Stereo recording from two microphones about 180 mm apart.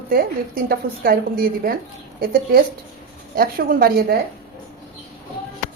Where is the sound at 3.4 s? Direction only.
55° right (ahead or behind).